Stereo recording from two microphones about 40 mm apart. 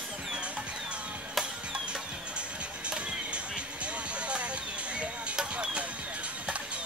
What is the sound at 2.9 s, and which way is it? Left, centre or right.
Music, right.